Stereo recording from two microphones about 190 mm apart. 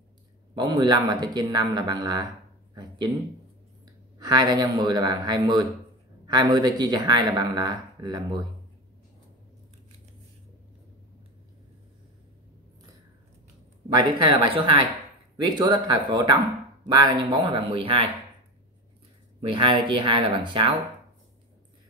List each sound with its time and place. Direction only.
0.6 s speech: 20° right (ahead or behind)
2.7 s a sound: 20° right (ahead or behind)
3.8 s speech: 20° right (ahead or behind)
14.5 s speech: 25° right (ahead or behind)
19.4 s speech: 25° right (ahead or behind)